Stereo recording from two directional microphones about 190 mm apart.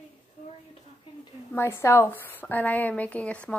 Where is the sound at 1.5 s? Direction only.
15° left (ahead or behind).